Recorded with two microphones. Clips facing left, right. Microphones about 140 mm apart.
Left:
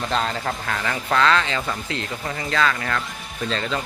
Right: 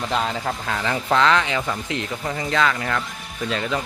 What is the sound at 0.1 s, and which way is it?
Speech, 10° right (ahead or behind).